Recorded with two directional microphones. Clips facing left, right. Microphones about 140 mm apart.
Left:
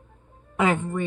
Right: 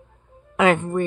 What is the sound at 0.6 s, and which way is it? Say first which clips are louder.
Speech: right 5 dB; 70° right (ahead or behind).